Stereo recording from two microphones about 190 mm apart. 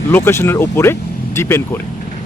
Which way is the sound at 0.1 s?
15° left (ahead or behind).